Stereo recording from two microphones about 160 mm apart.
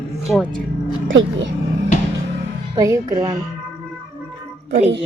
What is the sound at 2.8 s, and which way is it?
Speech, 20° right (ahead or behind).